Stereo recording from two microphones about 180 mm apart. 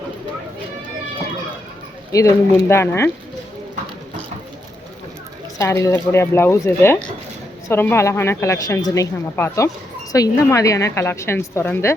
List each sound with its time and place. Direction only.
2.1 s speech: 20° left (ahead or behind)
5.5 s speech: 15° left (ahead or behind)